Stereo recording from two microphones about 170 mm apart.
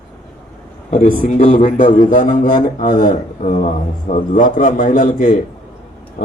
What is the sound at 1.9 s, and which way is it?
Speech, 50° left (ahead or behind).